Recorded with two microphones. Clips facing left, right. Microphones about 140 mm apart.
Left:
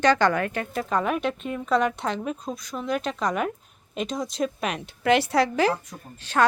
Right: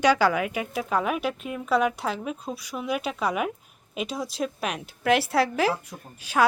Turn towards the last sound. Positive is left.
turn(degrees=-10)  # may be behind; listen again after turning